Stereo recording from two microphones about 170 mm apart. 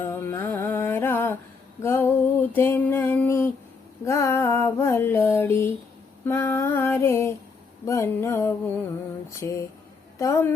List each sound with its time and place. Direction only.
0.0 s music: 15° left (ahead or behind)
1.8 s female singing: 15° left (ahead or behind)